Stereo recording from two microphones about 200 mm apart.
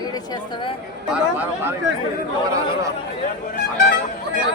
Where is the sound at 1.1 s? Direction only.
10° right (ahead or behind).